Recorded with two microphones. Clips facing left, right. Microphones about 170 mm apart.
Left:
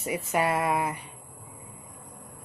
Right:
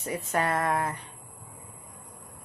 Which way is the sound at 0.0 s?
10° left (ahead or behind).